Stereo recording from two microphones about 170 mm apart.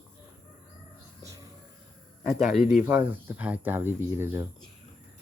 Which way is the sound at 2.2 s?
Centre (ahead or behind).